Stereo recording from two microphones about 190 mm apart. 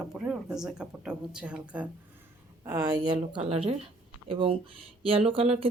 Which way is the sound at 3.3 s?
30° right (ahead or behind).